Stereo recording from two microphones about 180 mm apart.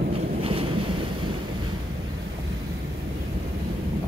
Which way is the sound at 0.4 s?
30° right (ahead or behind).